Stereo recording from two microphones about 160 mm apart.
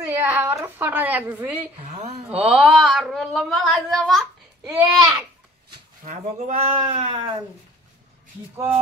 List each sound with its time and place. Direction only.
0.2 s a woman's voice: 15° right (ahead or behind)
1.9 s speech: 45° right (ahead or behind)
2.2 s speech: 5° right (ahead or behind)
6.0 s speech: 45° right (ahead or behind)